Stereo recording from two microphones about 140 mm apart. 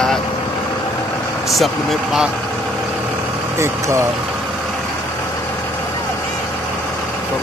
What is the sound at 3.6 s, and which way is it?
Speech, 20° right (ahead or behind).